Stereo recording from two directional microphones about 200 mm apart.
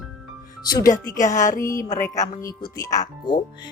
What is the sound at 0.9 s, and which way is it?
Speech, 40° left (ahead or behind).